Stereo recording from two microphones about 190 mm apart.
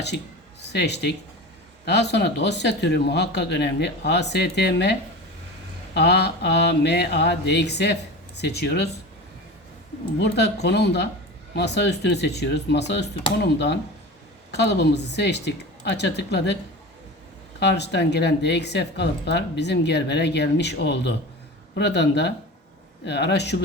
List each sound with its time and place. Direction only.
0.7 s speech: 65° left (ahead or behind)
10.2 s speech: 65° left (ahead or behind)
17.6 s speech: 65° left (ahead or behind)